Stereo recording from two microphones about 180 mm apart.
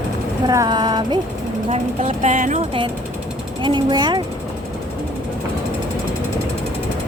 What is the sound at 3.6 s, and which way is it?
Speech, 25° right (ahead or behind).